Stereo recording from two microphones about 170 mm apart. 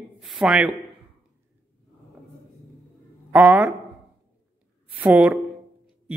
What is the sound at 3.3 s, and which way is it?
Speech, 10° right (ahead or behind).